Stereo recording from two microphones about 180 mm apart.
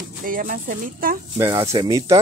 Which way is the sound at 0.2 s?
50° right (ahead or behind).